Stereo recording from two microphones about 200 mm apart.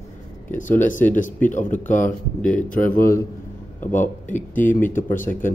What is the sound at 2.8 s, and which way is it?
Speech, 10° left (ahead or behind).